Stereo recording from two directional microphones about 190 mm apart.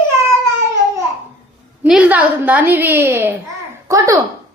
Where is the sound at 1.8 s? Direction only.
5° right (ahead or behind).